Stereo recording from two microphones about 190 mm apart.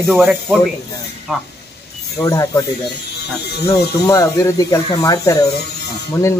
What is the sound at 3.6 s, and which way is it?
Speech, 15° left (ahead or behind).